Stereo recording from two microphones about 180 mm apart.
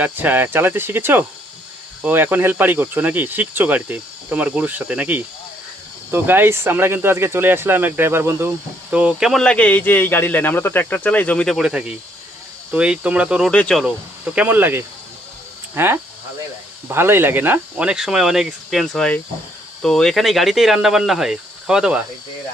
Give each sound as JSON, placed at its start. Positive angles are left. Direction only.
{"t": 0.0, "sound": "speech", "side_deg": -10}
{"t": 13.5, "sound": "speech", "side_deg": 5}
{"t": 13.8, "sound": "speech", "side_deg": -5}